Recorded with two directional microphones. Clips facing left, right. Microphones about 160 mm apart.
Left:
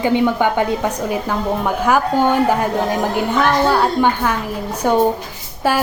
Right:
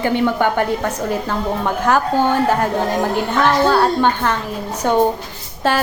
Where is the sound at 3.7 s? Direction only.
10° left (ahead or behind).